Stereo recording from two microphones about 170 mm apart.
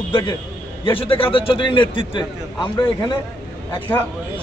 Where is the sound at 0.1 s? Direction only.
25° left (ahead or behind).